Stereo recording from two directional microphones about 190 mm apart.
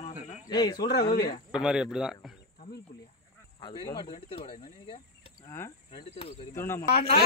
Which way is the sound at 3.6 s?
25° left (ahead or behind).